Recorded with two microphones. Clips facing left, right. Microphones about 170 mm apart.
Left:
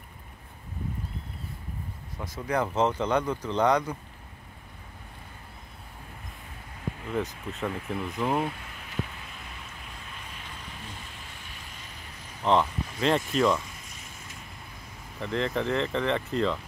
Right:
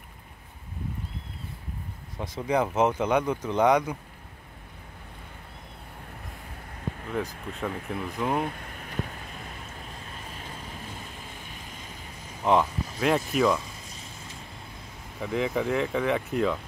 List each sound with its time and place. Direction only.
2.4 s speech: 15° right (ahead or behind)
7.1 s speech: centre (ahead or behind)
8.5 s vehicle: 50° right (ahead or behind)
12.4 s speech: 10° right (ahead or behind)
13.8 s a sound: 35° right (ahead or behind)
15.1 s speech: 10° right (ahead or behind)